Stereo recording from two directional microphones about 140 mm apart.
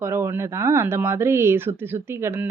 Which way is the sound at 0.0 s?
20° right (ahead or behind).